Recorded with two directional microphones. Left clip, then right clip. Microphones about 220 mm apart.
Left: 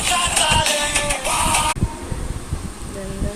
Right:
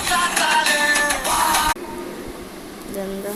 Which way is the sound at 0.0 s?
5° right (ahead or behind).